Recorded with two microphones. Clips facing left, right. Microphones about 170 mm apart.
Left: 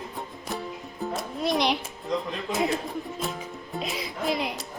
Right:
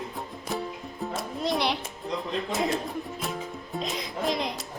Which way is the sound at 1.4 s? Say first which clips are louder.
Left 2 dB; 15° left (ahead or behind).